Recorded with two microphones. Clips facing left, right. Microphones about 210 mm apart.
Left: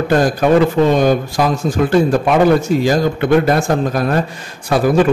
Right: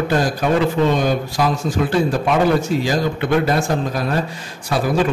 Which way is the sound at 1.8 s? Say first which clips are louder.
Left 5 dB; 50° left (ahead or behind).